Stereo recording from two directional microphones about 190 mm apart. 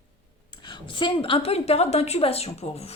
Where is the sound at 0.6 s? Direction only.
25° left (ahead or behind).